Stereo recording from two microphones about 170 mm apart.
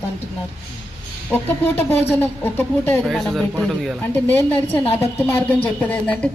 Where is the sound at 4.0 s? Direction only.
10° left (ahead or behind).